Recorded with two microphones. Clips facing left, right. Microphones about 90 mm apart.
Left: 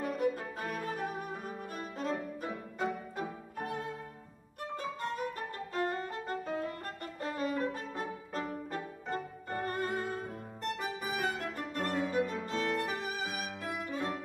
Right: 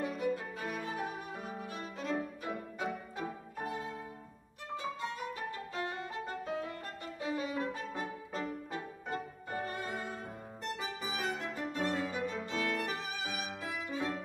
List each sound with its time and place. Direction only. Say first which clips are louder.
0.0 s violin: left 2 dB; centre (ahead or behind)
2.0 s music: even; centre (ahead or behind)
5.8 s violin: left 6 dB; 40° left (ahead or behind)
6.1 s music: left 2 dB; centre (ahead or behind)
12.7 s violin: left 3 dB; centre (ahead or behind)